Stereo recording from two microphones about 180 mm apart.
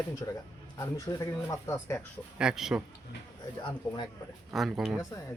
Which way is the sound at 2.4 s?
5° right (ahead or behind).